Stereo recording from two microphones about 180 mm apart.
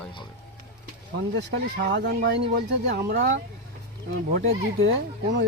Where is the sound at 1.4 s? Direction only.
75° right (ahead or behind).